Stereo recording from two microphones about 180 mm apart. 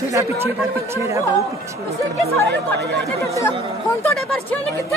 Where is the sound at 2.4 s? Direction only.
70° right (ahead or behind).